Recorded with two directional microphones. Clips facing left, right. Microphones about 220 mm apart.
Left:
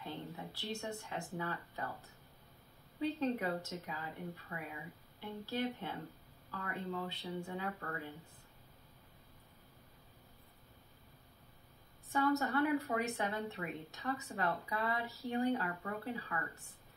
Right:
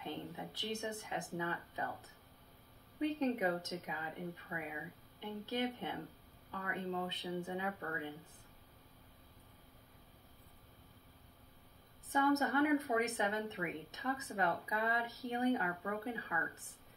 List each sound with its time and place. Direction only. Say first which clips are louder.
0.0 s speech: right 1 dB; 20° right (ahead or behind)
3.0 s a woman's voice: right 1 dB; 20° right (ahead or behind)
12.1 s a woman's voice: right 1 dB; 20° right (ahead or behind)